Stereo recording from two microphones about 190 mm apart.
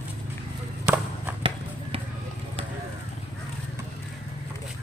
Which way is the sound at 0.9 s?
5° right (ahead or behind).